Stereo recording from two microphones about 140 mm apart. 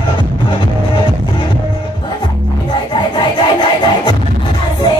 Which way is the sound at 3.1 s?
35° left (ahead or behind).